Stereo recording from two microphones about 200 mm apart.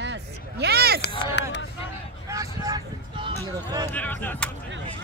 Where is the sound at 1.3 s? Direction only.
60° left (ahead or behind).